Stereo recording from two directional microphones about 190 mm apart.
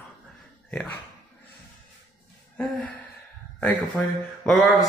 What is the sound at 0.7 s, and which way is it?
Speech, 5° left (ahead or behind).